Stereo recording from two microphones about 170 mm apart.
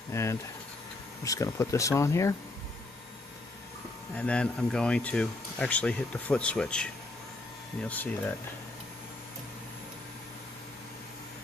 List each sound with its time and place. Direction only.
0.1 s speech: 15° left (ahead or behind)
4.1 s speech: 5° left (ahead or behind)